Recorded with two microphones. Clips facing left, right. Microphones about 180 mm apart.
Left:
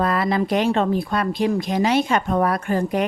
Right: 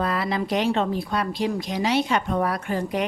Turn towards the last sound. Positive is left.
turn(degrees=50)  # may be behind; listen again after turning